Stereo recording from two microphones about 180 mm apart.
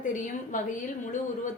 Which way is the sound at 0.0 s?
45° left (ahead or behind).